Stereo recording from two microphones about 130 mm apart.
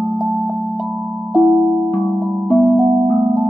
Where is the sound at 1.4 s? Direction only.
Centre (ahead or behind).